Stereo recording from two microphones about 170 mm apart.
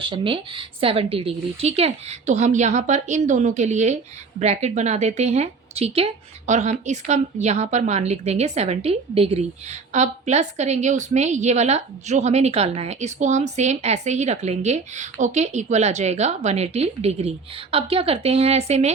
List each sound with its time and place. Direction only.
0.0 s a woman's voice: 30° right (ahead or behind)